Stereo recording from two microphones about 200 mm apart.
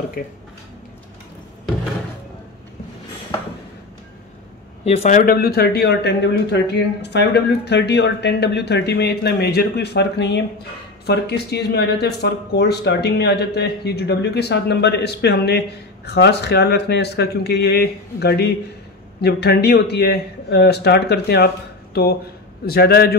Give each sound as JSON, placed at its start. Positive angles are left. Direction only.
{"t": 4.8, "sound": "speech", "side_deg": 30}